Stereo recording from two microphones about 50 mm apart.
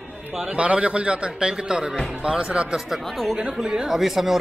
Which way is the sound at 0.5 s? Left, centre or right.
Right.